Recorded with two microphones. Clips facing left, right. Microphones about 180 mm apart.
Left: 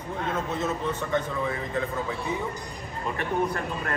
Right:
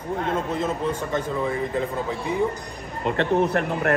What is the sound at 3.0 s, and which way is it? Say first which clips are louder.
Speech: right 6 dB; 75° right (ahead or behind).